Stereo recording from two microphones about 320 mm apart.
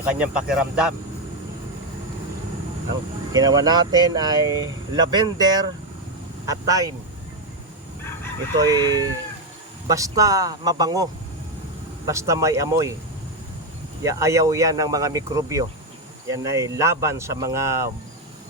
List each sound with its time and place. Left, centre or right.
0.0 s speech: centre
3.3 s speech: centre
8.5 s speech: centre
14.0 s speech: centre